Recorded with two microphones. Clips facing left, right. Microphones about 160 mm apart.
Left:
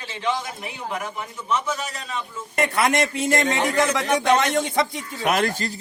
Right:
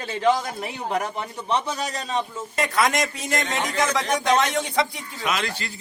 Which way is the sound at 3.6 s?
55° left (ahead or behind).